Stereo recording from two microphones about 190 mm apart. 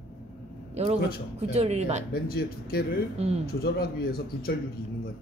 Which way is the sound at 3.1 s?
35° right (ahead or behind).